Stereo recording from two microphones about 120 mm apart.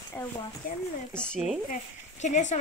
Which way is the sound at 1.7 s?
80° left.